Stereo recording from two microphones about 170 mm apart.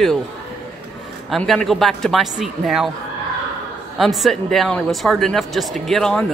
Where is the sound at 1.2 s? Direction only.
Centre (ahead or behind).